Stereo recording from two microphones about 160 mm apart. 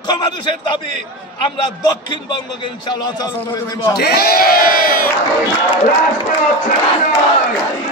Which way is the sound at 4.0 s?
75° left (ahead or behind).